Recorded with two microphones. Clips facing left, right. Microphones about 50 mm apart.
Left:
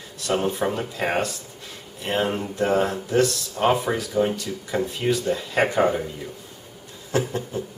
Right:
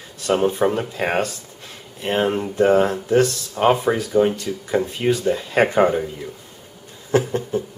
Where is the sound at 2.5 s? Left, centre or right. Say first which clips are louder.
Right 6 dB; right.